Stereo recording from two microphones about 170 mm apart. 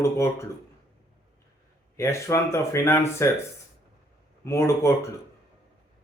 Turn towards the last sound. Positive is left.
turn(degrees=15)  # may be behind; listen again after turning